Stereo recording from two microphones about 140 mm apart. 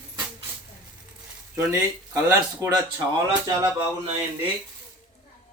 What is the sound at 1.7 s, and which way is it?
Speech, 20° right (ahead or behind).